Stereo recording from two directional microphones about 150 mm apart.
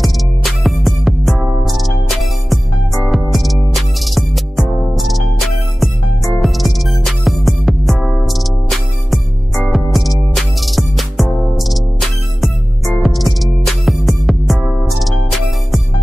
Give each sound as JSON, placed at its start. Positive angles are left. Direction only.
{"t": 0.0, "sound": "music", "side_deg": 0}